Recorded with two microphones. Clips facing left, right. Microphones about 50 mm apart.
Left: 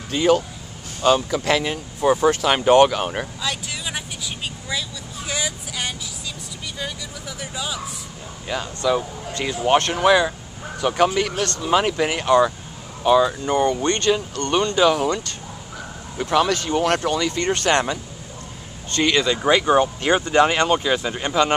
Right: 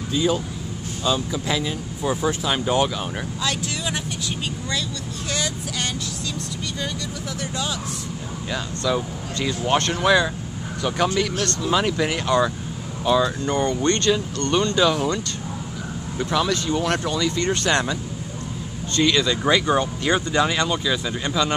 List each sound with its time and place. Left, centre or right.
0.1 s speech: left
3.4 s vehicle: centre
7.3 s vehicle: centre
8.5 s speech: centre
16.3 s speech: left
18.9 s speech: left
20.3 s speech: left